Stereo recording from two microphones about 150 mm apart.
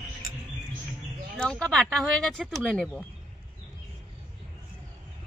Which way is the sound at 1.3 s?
5° left (ahead or behind).